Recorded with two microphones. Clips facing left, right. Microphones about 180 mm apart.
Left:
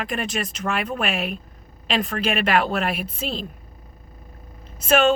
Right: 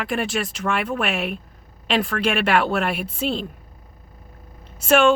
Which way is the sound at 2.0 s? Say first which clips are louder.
Right 1 dB; 85° right.